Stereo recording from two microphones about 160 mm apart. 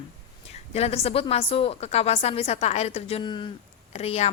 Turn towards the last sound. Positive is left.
turn(degrees=40)  # may be behind; listen again after turning